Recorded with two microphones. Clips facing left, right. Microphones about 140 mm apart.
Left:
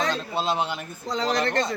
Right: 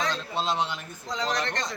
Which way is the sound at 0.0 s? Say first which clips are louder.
Left 3 dB; 40° left (ahead or behind).